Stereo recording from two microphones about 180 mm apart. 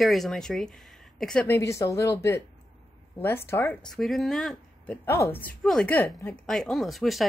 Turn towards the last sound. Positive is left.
turn(degrees=0)  # may be behind; listen again after turning